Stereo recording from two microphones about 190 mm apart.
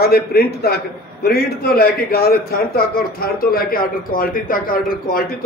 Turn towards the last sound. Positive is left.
turn(degrees=50)  # may be behind; listen again after turning